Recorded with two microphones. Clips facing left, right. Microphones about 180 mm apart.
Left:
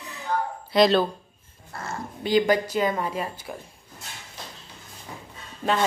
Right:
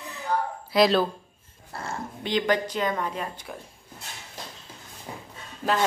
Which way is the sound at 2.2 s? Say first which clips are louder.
Left 4 dB; 10° left (ahead or behind).